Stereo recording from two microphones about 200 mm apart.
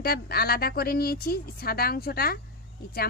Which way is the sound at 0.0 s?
50° left (ahead or behind).